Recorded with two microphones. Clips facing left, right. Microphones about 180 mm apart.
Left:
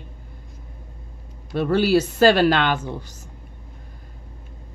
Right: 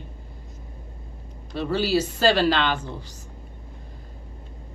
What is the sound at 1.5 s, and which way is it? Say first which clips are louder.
A woman's voice: left 5 dB; 55° left (ahead or behind).